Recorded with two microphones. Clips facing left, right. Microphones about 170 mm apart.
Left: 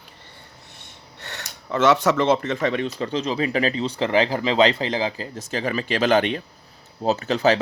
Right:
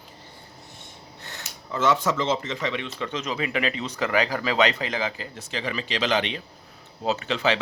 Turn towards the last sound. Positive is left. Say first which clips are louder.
# left 5 dB
turn(degrees=40)  # may be behind; listen again after turning